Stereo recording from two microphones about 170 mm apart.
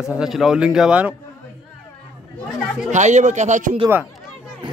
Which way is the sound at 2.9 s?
45° right (ahead or behind).